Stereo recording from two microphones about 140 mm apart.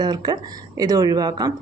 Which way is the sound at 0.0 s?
30° right (ahead or behind).